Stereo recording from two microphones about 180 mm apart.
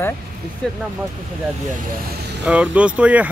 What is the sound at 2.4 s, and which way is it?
Speech, 5° right (ahead or behind).